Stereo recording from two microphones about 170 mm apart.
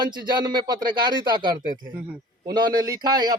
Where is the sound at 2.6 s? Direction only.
25° right (ahead or behind).